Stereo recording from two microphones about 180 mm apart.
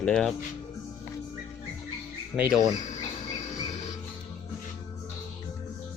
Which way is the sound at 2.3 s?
5° right (ahead or behind).